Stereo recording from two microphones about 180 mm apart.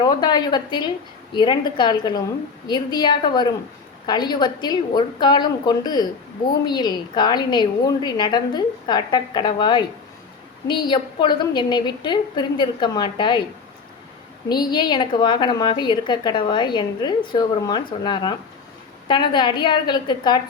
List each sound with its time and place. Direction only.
0.0 s a woman's voice: 25° left (ahead or behind)
14.5 s a woman's voice: 25° left (ahead or behind)